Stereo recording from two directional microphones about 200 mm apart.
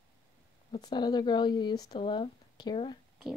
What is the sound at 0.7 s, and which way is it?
Speech, 20° left (ahead or behind).